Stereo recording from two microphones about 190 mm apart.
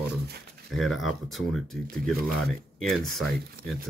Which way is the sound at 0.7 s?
Centre (ahead or behind).